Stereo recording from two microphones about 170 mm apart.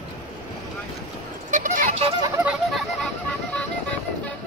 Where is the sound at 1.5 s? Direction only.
50° right (ahead or behind).